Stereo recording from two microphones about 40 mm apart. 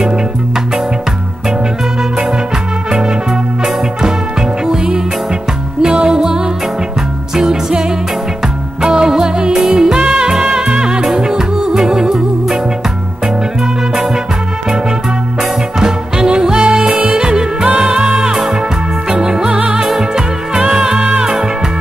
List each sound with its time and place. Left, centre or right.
2.9 s music: right
8.8 s music: centre
15.8 s music: centre